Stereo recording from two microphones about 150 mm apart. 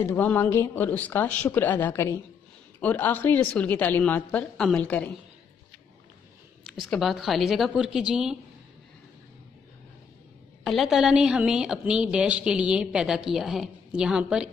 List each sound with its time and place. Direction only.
0.0 s speech: 15° left (ahead or behind)
6.7 s a woman's voice: centre (ahead or behind)
10.6 s a woman's voice: centre (ahead or behind)